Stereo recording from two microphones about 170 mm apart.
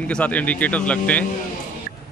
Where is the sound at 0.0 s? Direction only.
5° left (ahead or behind).